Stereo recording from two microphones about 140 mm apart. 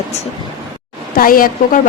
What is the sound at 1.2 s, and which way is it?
Speech, 90° left.